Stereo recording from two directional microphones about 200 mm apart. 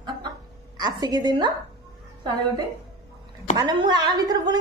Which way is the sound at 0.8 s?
20° right (ahead or behind).